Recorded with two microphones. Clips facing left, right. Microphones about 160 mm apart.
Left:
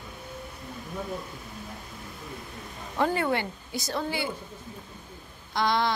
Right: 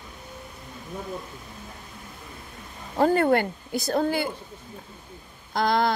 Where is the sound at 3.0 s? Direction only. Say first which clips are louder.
Right 6 dB; 45° right (ahead or behind).